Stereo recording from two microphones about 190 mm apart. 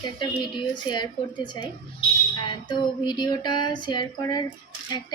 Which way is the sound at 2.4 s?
25° left (ahead or behind).